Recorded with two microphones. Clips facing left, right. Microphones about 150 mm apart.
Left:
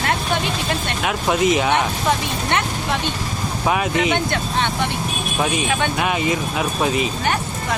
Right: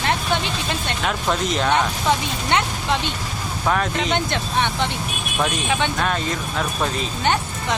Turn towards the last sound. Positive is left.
turn(degrees=10)  # may be behind; listen again after turning